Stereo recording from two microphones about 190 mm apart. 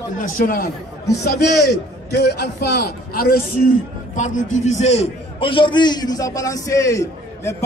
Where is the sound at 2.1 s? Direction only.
60° left (ahead or behind).